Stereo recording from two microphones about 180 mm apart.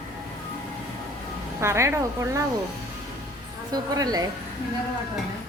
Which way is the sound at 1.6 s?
15° right (ahead or behind).